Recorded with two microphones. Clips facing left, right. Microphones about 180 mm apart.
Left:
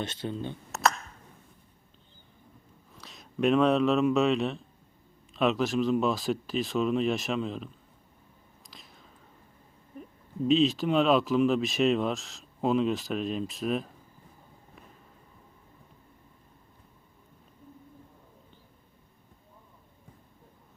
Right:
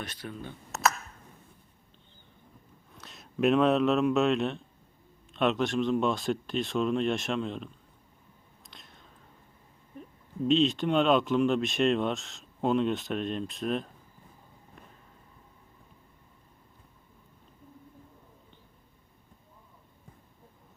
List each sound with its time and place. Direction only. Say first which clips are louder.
0.0 s speech: left 6 dB; 25° left (ahead or behind)
0.7 s a sound: left 1 dB; centre (ahead or behind)
2.9 s speech: even; centre (ahead or behind)
8.6 s whispering: left 1 dB; centre (ahead or behind)
10.4 s speech: left 1 dB; centre (ahead or behind)